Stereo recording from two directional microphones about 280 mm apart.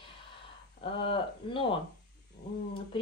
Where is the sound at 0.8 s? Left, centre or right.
Centre.